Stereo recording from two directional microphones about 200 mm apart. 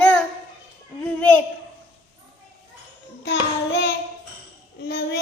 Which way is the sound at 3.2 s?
60° left (ahead or behind).